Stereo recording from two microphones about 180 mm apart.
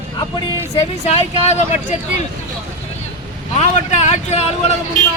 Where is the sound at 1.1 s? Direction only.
35° left (ahead or behind).